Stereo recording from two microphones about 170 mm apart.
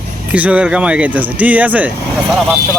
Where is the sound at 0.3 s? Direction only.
10° right (ahead or behind).